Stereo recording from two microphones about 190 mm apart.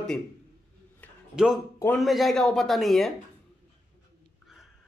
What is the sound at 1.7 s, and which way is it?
Speech, 10° left (ahead or behind).